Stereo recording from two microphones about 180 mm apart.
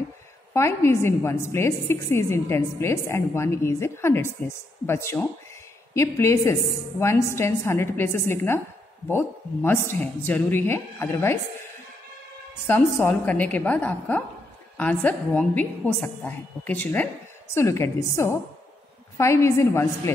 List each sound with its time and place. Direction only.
0.5 s a woman's voice: 15° left (ahead or behind)
12.6 s a woman's voice: 10° left (ahead or behind)